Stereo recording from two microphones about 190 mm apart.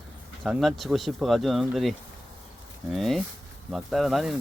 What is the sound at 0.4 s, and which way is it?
Speech, centre (ahead or behind).